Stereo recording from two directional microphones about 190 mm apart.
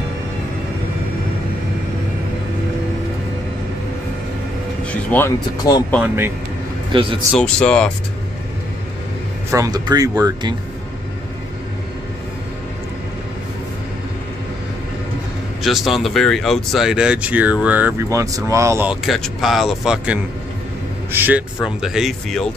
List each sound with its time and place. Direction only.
4.8 s music: 10° left (ahead or behind)
5.6 s speech: 20° left (ahead or behind)
6.9 s a man's voice: 30° right (ahead or behind)
7.3 s speech: 5° left (ahead or behind)
9.5 s speech: 20° right (ahead or behind)
15.6 s speech: centre (ahead or behind)
19.0 s speech: centre (ahead or behind)